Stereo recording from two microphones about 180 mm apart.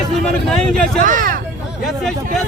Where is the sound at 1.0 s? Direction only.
50° right (ahead or behind).